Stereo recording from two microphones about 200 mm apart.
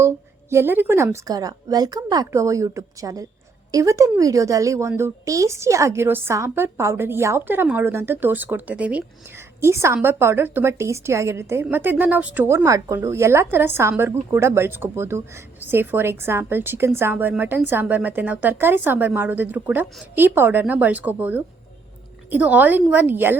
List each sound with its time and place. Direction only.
0.5 s a woman's voice: 10° right (ahead or behind)